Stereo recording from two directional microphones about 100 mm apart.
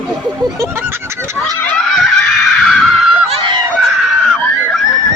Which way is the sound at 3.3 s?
55° right (ahead or behind).